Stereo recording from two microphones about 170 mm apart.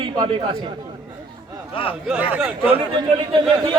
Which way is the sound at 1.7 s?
30° left (ahead or behind).